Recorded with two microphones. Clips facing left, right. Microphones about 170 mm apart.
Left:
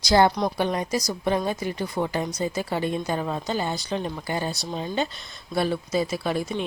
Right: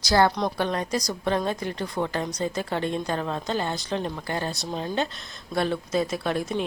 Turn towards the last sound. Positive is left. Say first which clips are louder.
# even
turn(degrees=0)  # may be behind; listen again after turning